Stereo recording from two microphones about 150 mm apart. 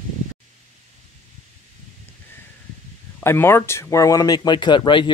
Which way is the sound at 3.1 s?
15° left (ahead or behind).